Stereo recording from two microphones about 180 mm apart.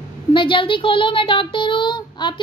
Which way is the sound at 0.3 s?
25° left (ahead or behind).